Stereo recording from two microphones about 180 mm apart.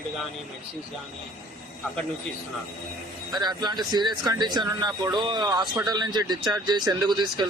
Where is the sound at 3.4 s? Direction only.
25° right (ahead or behind).